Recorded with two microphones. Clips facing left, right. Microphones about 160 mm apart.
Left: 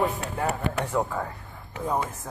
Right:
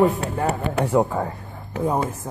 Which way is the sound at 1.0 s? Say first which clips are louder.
Right 6 dB; 35° right (ahead or behind).